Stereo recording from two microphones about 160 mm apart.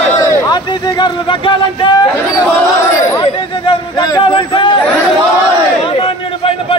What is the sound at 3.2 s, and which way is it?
A man's voice, 35° left (ahead or behind).